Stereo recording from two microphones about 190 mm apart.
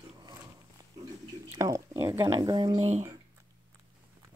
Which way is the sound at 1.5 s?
20° right (ahead or behind).